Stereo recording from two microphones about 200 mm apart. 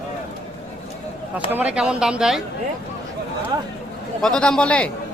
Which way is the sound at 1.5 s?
5° right (ahead or behind).